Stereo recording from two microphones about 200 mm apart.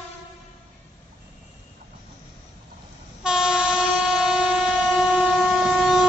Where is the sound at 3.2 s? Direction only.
5° right (ahead or behind).